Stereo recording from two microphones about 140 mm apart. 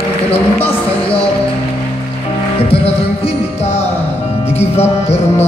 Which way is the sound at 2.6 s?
45° left (ahead or behind).